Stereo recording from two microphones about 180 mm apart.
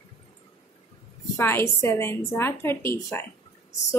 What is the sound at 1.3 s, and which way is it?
A woman's voice, 15° left (ahead or behind).